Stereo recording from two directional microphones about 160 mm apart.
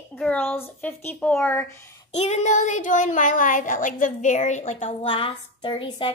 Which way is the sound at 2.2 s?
45° left (ahead or behind).